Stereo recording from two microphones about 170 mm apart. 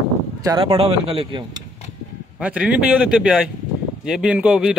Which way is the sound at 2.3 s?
10° right (ahead or behind).